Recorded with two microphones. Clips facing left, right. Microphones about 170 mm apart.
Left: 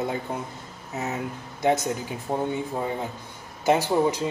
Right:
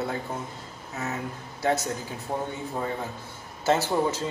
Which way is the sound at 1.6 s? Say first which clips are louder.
Left 3 dB; 20° left (ahead or behind).